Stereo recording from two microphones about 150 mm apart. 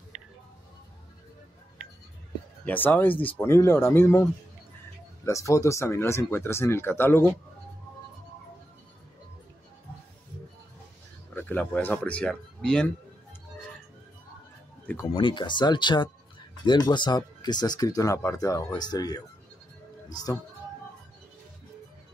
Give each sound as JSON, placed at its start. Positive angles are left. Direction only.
{"t": 2.6, "sound": "speech", "side_deg": 10}
{"t": 5.2, "sound": "speech", "side_deg": 20}
{"t": 11.3, "sound": "speech", "side_deg": 10}
{"t": 15.1, "sound": "speech", "side_deg": 35}